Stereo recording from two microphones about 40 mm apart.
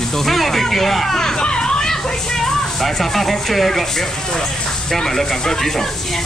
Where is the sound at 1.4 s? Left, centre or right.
Left.